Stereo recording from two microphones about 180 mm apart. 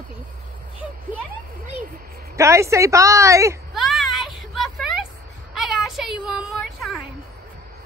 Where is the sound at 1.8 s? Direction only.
50° right (ahead or behind).